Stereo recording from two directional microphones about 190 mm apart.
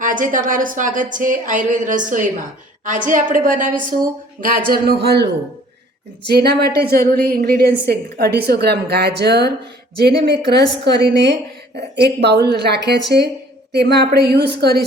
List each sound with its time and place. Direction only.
0.0 s a woman's voice: 45° right (ahead or behind)